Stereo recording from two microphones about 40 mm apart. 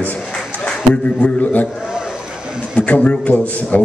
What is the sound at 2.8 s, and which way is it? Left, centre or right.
A man's voice, left.